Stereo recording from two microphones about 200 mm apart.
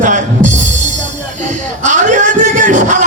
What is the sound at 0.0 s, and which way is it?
Music, 40° right (ahead or behind).